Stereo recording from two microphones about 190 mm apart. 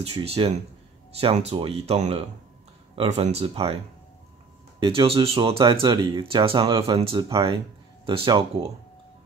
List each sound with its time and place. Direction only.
0.0 s speech: 30° right (ahead or behind)